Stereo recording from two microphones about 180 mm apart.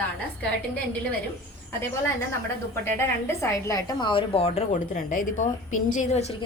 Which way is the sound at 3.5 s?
20° left (ahead or behind).